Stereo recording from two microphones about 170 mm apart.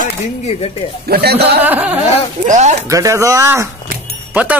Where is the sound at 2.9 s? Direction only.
20° right (ahead or behind).